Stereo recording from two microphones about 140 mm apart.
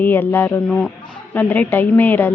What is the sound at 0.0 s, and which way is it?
A woman's voice, 15° left (ahead or behind).